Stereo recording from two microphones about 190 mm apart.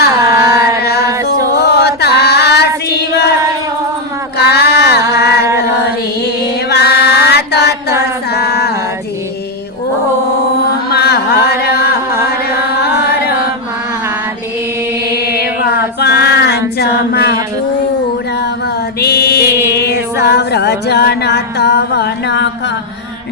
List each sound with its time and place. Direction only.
0.0 s carnatic music: 55° left (ahead or behind)
0.8 s a sound: 55° left (ahead or behind)
1.0 s music: 20° right (ahead or behind)
1.5 s chant: 60° left (ahead or behind)
4.4 s a sound: 60° left (ahead or behind)
6.7 s music: 60° left (ahead or behind)
8.3 s a sound: 55° left (ahead or behind)
10.8 s chant: 60° left (ahead or behind)
12.8 s carnatic music: 60° left (ahead or behind)
15.1 s music: 55° left (ahead or behind)
16.0 s female singing: 60° left (ahead or behind)
18.9 s music: 60° left (ahead or behind)